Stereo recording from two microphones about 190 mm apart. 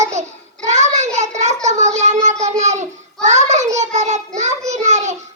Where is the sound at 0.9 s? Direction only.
35° right (ahead or behind).